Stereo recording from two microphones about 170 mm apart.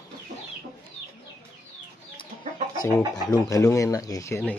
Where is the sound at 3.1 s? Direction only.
20° left (ahead or behind).